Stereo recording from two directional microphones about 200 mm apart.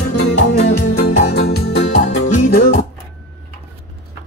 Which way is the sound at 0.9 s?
50° left (ahead or behind).